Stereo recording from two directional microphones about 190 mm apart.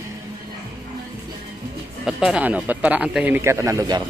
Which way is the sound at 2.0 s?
5° right (ahead or behind).